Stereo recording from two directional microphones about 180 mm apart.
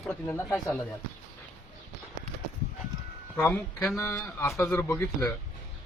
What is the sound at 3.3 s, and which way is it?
Speech, 10° left (ahead or behind).